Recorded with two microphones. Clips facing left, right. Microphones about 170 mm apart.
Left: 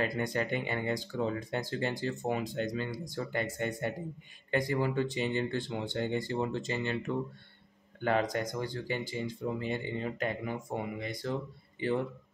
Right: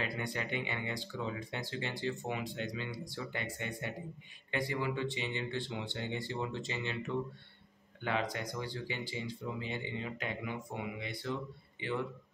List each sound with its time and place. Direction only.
0.0 s speech: 45° left (ahead or behind)
8.0 s speech: 45° left (ahead or behind)